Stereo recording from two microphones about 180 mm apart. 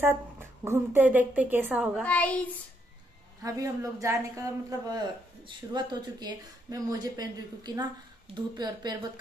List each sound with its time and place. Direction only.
0.0 s a woman's voice: 10° right (ahead or behind)
2.0 s child singing: 10° left (ahead or behind)
3.4 s speech: 20° right (ahead or behind)